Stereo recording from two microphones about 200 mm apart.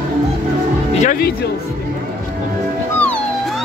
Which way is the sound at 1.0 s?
40° left (ahead or behind).